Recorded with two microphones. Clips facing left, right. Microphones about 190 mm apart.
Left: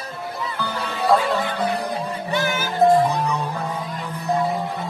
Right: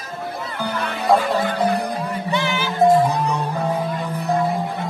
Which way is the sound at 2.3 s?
45° left (ahead or behind).